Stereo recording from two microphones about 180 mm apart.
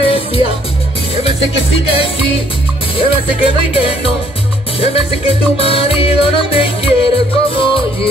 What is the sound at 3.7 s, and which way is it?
Music, 30° left (ahead or behind).